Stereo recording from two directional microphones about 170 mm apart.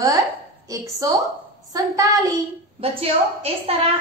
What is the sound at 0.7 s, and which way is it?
A woman's voice, 20° right (ahead or behind).